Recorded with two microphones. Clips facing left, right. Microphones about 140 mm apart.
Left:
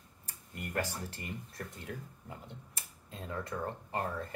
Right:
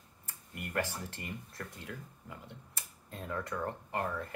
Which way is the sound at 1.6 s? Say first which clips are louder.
Left 1 dB; 30° left (ahead or behind).